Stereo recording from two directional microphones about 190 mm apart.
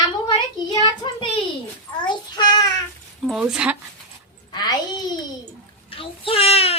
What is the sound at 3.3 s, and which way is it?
Speech, 5° right (ahead or behind).